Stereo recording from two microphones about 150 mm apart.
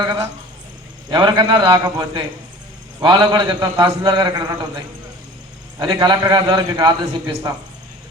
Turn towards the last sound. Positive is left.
turn(degrees=-25)  # may be behind; listen again after turning